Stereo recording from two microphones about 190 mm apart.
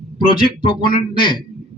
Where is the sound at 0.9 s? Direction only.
25° left (ahead or behind).